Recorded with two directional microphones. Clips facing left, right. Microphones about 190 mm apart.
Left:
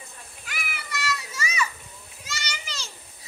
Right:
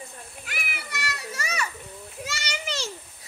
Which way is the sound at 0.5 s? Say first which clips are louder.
Left 2 dB; 55° right (ahead or behind).